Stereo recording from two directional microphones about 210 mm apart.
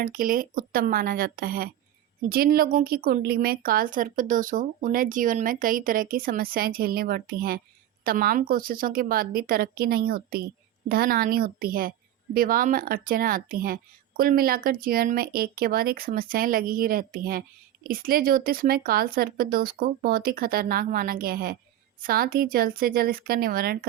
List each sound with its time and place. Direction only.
0.0 s speech: 40° right (ahead or behind)